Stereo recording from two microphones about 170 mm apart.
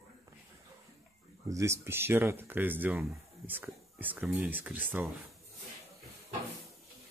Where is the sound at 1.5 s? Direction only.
15° right (ahead or behind).